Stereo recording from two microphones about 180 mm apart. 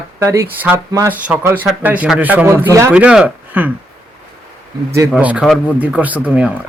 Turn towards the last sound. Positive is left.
turn(degrees=-10)  # may be behind; listen again after turning